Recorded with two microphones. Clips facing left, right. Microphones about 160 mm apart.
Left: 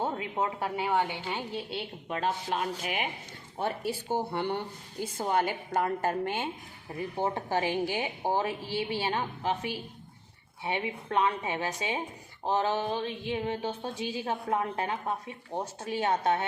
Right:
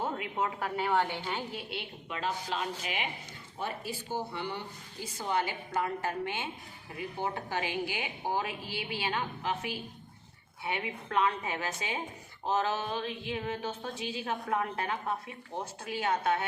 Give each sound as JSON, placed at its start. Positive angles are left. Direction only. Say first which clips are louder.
{"t": 0.0, "sound": "a sound", "louder": "left 2 dB", "side_deg": 30}
{"t": 0.8, "sound": "a woman's voice", "louder": "even", "side_deg": 15}
{"t": 2.0, "sound": "a woman's voice", "louder": "left 4 dB", "side_deg": 50}
{"t": 4.3, "sound": "a woman's voice", "louder": "left 6 dB", "side_deg": 55}